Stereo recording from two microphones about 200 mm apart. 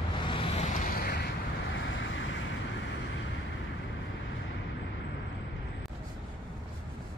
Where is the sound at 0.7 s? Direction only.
45° left (ahead or behind); by 2.2 s 70° left (ahead or behind).